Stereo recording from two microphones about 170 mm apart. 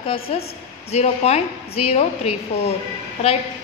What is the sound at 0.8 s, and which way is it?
A woman's voice, 40° left (ahead or behind).